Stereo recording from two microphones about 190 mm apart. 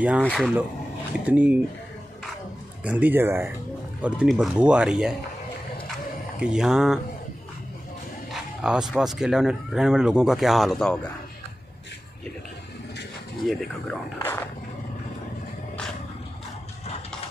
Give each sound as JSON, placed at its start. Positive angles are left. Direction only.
{"t": 0.2, "sound": "speech", "side_deg": 5}
{"t": 1.2, "sound": "speech", "side_deg": -5}
{"t": 2.8, "sound": "speech", "side_deg": -5}
{"t": 6.4, "sound": "speech", "side_deg": -5}
{"t": 8.3, "sound": "speech", "side_deg": -5}
{"t": 13.4, "sound": "speech", "side_deg": 0}
{"t": 14.1, "sound": "speech", "side_deg": 10}